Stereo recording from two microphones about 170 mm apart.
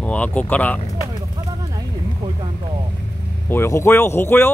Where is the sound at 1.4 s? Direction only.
30° right (ahead or behind).